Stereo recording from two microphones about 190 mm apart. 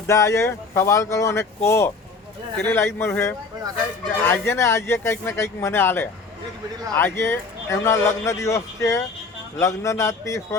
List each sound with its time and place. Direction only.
0.1 s a man's voice: 15° left (ahead or behind)